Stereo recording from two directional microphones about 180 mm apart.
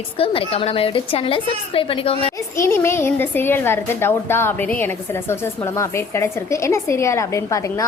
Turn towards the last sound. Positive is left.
turn(degrees=20)  # may be behind; listen again after turning